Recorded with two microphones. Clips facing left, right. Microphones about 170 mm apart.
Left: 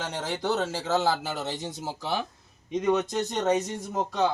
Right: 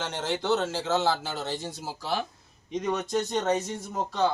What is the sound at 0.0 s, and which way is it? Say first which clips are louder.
Speech: even; 10° left (ahead or behind).